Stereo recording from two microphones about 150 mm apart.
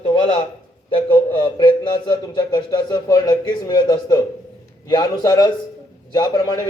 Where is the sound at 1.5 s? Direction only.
30° left (ahead or behind).